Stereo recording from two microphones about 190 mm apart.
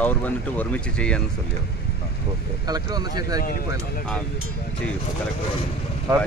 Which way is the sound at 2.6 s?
20° right (ahead or behind).